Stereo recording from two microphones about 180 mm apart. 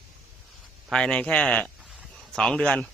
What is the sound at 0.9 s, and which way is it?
Speech, 5° left (ahead or behind).